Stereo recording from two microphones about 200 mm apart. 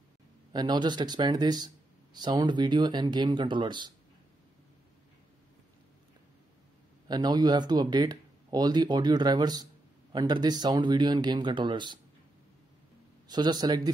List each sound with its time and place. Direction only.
0.5 s speech: 20° right (ahead or behind)
7.1 s speech: 20° right (ahead or behind)
13.3 s speech: 20° right (ahead or behind)